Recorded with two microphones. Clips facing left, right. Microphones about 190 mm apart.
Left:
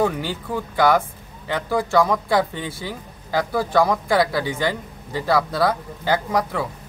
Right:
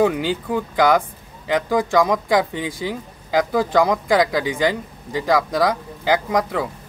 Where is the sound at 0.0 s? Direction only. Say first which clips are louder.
Right 4 dB; 15° right (ahead or behind).